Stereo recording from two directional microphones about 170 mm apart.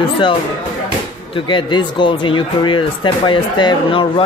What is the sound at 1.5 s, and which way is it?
Speech, 25° left (ahead or behind).